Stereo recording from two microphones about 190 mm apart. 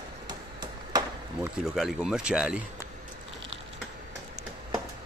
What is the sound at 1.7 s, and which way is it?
A man's voice, centre (ahead or behind).